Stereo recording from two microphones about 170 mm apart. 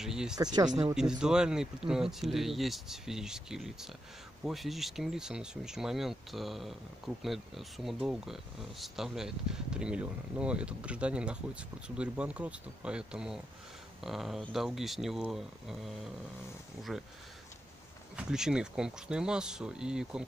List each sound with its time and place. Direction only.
0.0 s speech: 5° right (ahead or behind)
0.4 s speech: 25° right (ahead or behind)
0.9 s speech: 5° right (ahead or behind)
18.1 s speech: 5° right (ahead or behind)